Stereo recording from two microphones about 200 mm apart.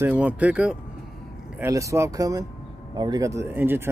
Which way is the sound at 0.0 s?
10° right (ahead or behind).